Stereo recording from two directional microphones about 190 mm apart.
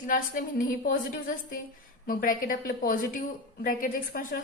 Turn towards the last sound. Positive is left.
turn(degrees=45)  # may be behind; listen again after turning